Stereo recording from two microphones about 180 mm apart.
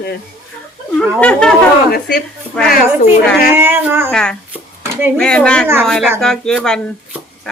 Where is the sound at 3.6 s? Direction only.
10° right (ahead or behind).